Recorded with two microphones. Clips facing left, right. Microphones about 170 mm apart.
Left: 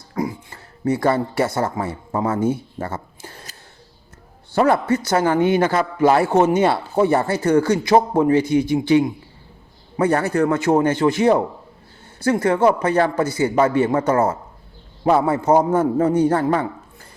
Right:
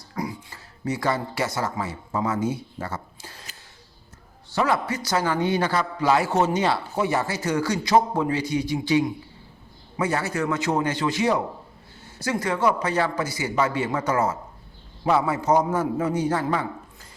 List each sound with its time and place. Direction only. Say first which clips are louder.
0.2 s a sound: left 6 dB; 25° left (ahead or behind)
0.5 s speech: left 10 dB; 50° left (ahead or behind)
4.5 s a man's voice: left 7 dB; 55° left (ahead or behind)